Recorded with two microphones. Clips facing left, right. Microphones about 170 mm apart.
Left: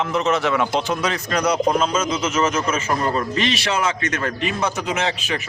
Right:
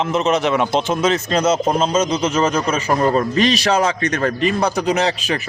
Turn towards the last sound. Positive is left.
turn(degrees=-40)  # may be behind; listen again after turning